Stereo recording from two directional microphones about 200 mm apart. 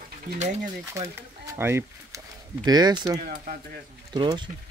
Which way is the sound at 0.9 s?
15° right (ahead or behind).